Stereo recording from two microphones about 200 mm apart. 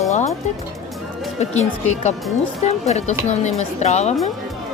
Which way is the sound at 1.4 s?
35° left (ahead or behind).